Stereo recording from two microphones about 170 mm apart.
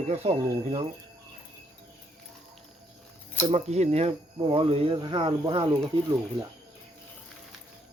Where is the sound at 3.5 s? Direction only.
40° right (ahead or behind).